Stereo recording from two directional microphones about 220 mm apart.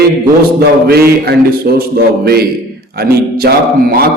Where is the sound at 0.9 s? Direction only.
45° right (ahead or behind).